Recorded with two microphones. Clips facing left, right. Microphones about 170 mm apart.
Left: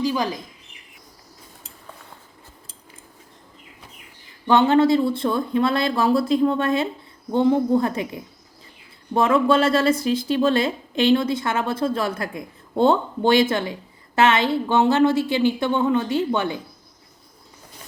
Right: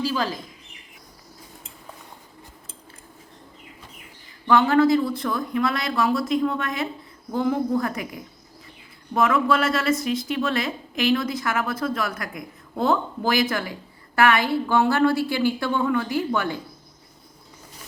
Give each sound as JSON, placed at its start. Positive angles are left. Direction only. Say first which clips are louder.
{"t": 0.0, "sound": "speech", "louder": "left 2 dB", "side_deg": 15}
{"t": 4.4, "sound": "speech", "louder": "left 2 dB", "side_deg": 25}